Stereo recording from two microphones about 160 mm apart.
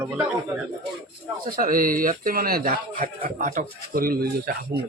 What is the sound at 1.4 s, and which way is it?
A man's voice, 60° right (ahead or behind).